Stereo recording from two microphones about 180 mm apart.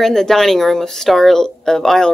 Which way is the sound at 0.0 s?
Centre (ahead or behind).